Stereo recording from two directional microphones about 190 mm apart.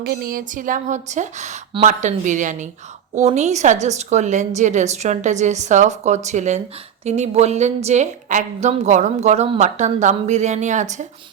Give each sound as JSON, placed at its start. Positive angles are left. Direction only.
{"t": 0.0, "sound": "a woman's voice", "side_deg": -55}